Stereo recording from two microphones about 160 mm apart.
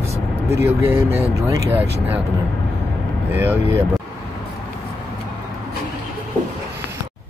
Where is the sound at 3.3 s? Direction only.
10° right (ahead or behind).